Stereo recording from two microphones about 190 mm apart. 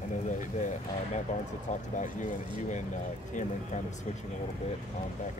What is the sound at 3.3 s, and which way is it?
Speech, 40° left (ahead or behind).